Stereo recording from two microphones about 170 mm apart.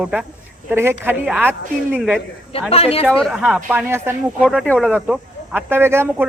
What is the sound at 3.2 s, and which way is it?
Speech, centre (ahead or behind).